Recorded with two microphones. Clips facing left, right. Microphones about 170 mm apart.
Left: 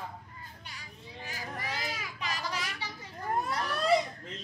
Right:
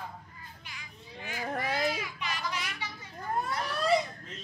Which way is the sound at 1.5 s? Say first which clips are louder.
Right 7 dB; 50° right (ahead or behind).